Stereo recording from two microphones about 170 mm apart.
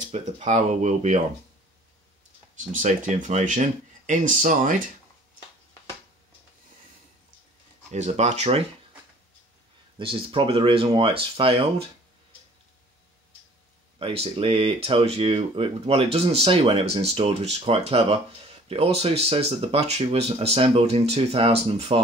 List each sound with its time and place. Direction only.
0.1 s speech: 45° right (ahead or behind)
2.5 s speech: 50° right (ahead or behind)
7.9 s speech: 40° right (ahead or behind)
9.9 s speech: 30° right (ahead or behind)
13.9 s speech: 35° right (ahead or behind)